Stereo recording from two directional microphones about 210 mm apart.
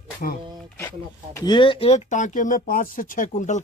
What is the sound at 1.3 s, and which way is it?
Speech, 20° left (ahead or behind).